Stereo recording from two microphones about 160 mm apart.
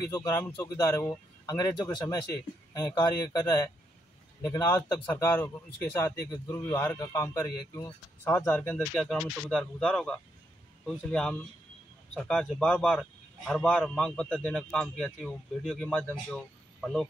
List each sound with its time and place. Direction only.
0.1 s a man's voice: 20° left (ahead or behind); by 17.0 s 5° left (ahead or behind)